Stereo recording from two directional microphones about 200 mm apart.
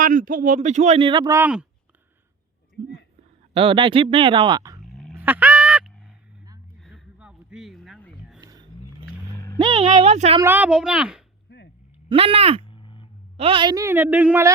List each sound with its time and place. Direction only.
0.0 s a man's voice: 40° right (ahead or behind); by 1.4 s 25° right (ahead or behind)
1.4 s a woman's voice: 5° right (ahead or behind)
3.5 s a man's voice: 25° right (ahead or behind)
5.1 s honk: 10° right (ahead or behind)
6.8 s a sound: centre (ahead or behind)
8.4 s a sound: 20° right (ahead or behind)
9.7 s a man's voice: 30° right (ahead or behind)
10.4 s a child's voice: 10° right (ahead or behind)
11.4 s whip: 60° left (ahead or behind)
12.0 s a man's voice: 30° right (ahead or behind)
12.7 s a sound: 25° left (ahead or behind)
13.3 s a woman's voice: 30° right (ahead or behind); by 14.5 s 10° right (ahead or behind)